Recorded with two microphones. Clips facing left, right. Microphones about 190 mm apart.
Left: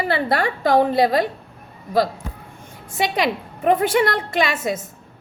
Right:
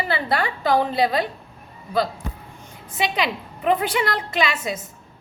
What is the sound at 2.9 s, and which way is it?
A woman's voice, 50° left (ahead or behind).